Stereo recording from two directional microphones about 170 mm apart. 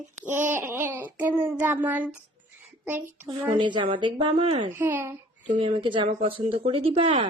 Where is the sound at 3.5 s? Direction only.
25° right (ahead or behind).